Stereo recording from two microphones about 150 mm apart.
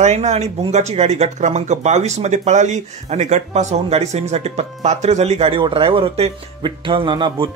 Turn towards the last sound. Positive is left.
turn(degrees=-30)  # may be behind; listen again after turning